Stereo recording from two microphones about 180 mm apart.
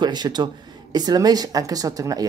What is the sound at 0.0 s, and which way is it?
Speech, 25° right (ahead or behind).